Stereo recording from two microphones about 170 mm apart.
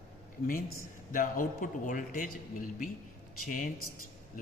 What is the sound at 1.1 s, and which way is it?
A woman's voice, 50° left (ahead or behind).